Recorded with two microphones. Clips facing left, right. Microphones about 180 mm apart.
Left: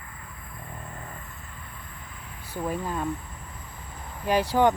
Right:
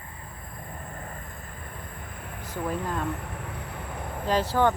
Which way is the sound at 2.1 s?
55° right (ahead or behind).